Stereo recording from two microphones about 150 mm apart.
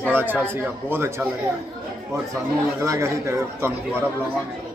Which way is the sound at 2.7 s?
20° right (ahead or behind).